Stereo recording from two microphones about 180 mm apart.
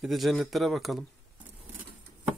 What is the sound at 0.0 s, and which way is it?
Speech, centre (ahead or behind).